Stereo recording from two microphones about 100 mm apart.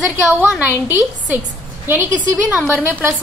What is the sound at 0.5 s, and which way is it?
A woman's voice, 20° right (ahead or behind).